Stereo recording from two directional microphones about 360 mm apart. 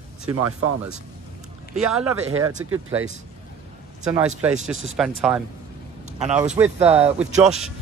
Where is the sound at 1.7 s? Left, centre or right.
Centre.